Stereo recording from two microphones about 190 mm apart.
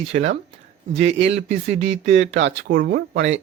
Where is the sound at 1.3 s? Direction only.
35° right (ahead or behind).